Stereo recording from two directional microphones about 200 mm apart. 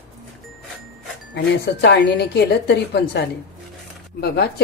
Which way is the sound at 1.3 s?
55° left (ahead or behind).